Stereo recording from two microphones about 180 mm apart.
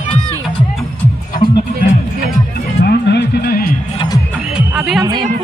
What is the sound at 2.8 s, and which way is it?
Music, 70° left (ahead or behind).